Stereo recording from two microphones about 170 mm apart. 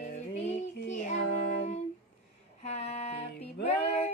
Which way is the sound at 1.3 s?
70° left (ahead or behind).